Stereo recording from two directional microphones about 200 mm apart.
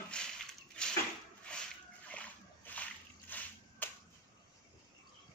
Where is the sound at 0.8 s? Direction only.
5° left (ahead or behind).